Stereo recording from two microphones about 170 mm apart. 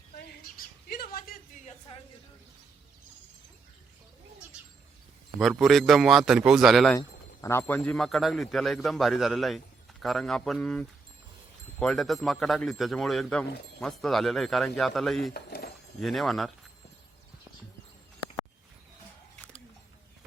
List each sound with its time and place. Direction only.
0.2 s bird: 70° left (ahead or behind)
1.9 s a sound: 35° left (ahead or behind)
5.4 s a man's voice: centre (ahead or behind)
7.4 s a man's voice: 15° left (ahead or behind)
15.3 s dishes: 70° left (ahead or behind)
16.0 s a man's voice: centre (ahead or behind)